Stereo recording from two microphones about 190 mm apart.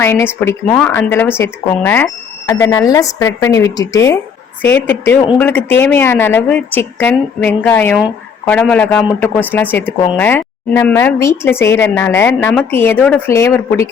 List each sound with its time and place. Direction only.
0.0 s a woman's voice: 10° left (ahead or behind)